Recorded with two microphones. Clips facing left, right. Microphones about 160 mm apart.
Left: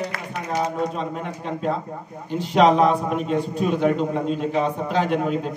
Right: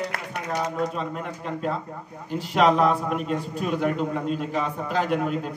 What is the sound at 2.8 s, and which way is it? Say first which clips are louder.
A man's voice: left 3 dB; 5° right (ahead or behind).